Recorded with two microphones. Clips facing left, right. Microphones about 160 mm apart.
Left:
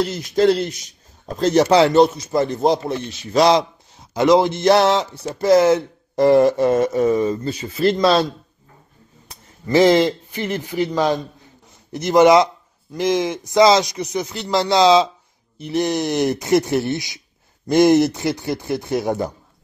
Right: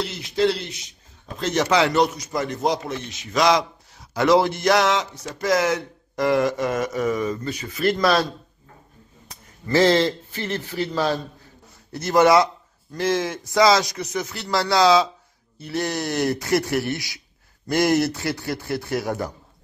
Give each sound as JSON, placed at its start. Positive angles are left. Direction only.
{"t": 0.0, "sound": "a man's voice", "side_deg": 45}
{"t": 4.1, "sound": "speech", "side_deg": 20}
{"t": 9.7, "sound": "a man's voice", "side_deg": 15}